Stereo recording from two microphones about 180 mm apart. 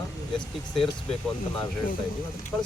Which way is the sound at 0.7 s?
Centre (ahead or behind).